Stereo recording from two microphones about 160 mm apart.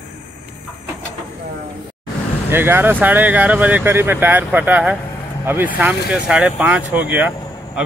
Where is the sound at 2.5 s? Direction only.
15° right (ahead or behind).